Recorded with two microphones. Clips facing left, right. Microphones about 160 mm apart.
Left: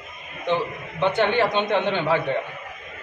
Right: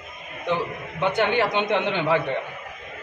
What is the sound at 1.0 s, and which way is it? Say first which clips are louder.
A man's voice: left 1 dB; 10° right (ahead or behind).